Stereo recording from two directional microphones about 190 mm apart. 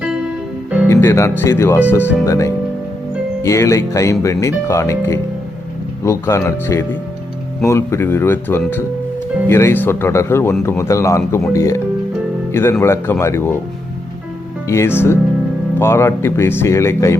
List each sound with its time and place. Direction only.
0.9 s speech: 15° left (ahead or behind)
14.7 s speech: 15° left (ahead or behind)